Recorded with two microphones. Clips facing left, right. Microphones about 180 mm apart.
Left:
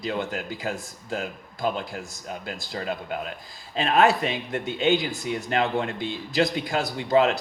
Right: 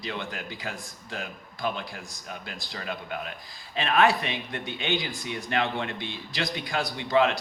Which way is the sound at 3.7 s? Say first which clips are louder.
Left 3 dB; 40° left (ahead or behind).